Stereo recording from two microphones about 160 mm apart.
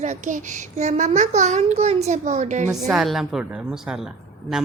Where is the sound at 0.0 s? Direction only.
50° right (ahead or behind).